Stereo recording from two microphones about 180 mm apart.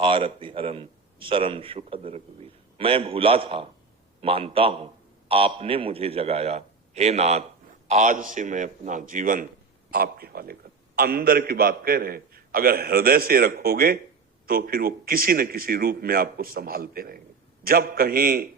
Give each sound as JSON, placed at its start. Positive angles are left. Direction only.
{"t": 0.0, "sound": "a man's voice", "side_deg": -30}